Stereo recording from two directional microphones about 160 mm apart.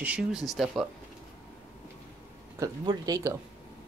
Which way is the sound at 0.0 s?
5° right (ahead or behind).